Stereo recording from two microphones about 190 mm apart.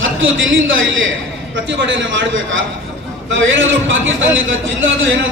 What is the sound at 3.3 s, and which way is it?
A man's voice, 85° right.